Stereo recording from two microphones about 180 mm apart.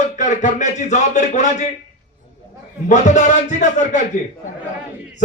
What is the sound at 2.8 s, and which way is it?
A man's voice, 40° left (ahead or behind).